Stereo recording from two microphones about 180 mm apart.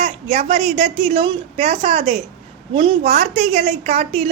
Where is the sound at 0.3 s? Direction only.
35° right (ahead or behind).